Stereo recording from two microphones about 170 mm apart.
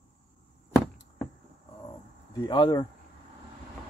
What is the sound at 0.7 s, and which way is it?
Chop, 15° left (ahead or behind).